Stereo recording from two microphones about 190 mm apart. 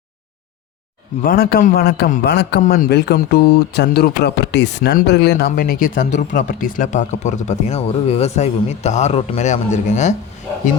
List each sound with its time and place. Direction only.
1.2 s a man's voice: 50° left (ahead or behind)
5.5 s a man's voice: 50° left (ahead or behind)